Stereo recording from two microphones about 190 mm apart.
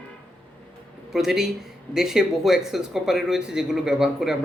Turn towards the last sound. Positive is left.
turn(degrees=-5)  # may be behind; listen again after turning